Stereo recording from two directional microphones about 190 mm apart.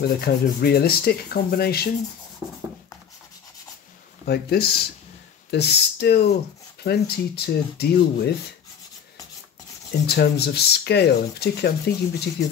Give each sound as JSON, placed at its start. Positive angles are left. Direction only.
{"t": 0.0, "sound": "speech", "side_deg": 55}
{"t": 4.3, "sound": "speech", "side_deg": 55}
{"t": 10.0, "sound": "speech", "side_deg": 60}